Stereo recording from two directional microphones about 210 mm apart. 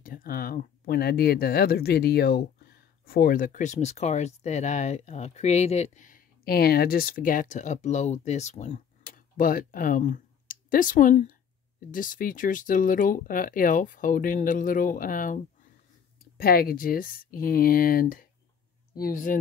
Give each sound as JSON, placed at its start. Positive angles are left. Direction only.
{"t": 0.0, "sound": "speech", "side_deg": 40}